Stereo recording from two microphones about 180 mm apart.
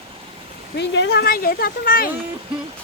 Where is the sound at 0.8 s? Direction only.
75° left (ahead or behind); by 2.1 s 55° left (ahead or behind).